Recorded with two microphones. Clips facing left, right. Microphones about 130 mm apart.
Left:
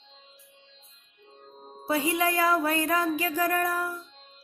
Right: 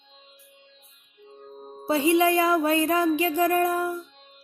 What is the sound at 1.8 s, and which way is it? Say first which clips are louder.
Speech: right 6 dB; 25° right (ahead or behind).